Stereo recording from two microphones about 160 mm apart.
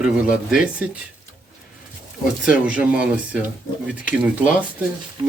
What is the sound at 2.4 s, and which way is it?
Speech, 10° right (ahead or behind).